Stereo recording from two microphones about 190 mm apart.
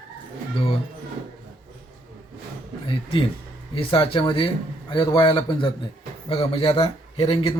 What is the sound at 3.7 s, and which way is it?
A man's voice, 30° left (ahead or behind).